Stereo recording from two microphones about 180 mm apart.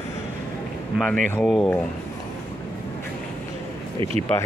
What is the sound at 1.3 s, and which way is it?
Speech, 5° left (ahead or behind).